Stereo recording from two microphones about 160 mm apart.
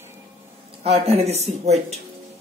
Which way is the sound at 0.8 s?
40° right (ahead or behind).